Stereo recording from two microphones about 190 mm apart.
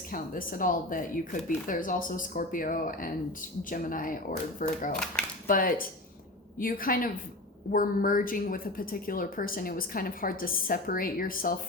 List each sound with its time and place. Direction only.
0.1 s speech: 45° left (ahead or behind)